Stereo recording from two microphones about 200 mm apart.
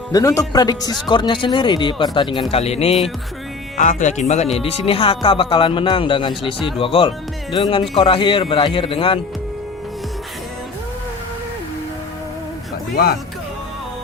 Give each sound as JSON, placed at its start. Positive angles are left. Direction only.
{"t": 0.1, "sound": "speech", "side_deg": 15}